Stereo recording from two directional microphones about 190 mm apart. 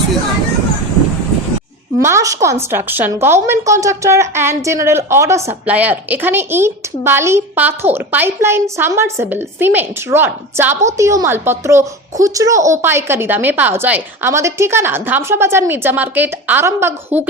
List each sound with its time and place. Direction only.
2.0 s a woman's voice: 15° right (ahead or behind)